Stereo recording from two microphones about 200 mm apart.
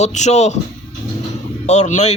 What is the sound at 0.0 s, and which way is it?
Speech, 35° left (ahead or behind).